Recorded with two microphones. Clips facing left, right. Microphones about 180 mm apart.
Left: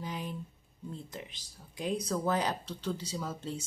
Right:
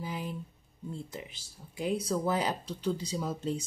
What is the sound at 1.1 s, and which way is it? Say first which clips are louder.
Speech: right 1 dB; 10° right (ahead or behind).